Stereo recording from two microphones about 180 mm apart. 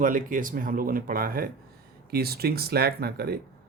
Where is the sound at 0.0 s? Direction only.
50° right (ahead or behind).